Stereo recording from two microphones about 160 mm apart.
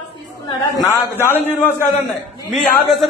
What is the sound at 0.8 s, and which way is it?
Speech, 20° left (ahead or behind).